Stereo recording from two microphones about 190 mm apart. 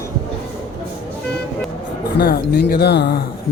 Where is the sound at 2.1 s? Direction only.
55° left (ahead or behind).